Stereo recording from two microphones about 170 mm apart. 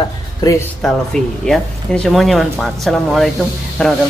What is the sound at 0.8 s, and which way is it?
Speech, 5° left (ahead or behind).